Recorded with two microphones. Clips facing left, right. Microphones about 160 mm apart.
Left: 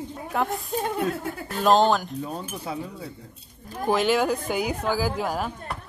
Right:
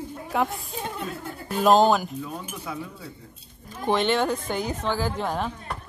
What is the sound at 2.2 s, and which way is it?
Speech, 35° left (ahead or behind).